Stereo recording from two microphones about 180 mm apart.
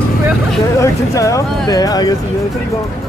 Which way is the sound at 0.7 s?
20° left (ahead or behind).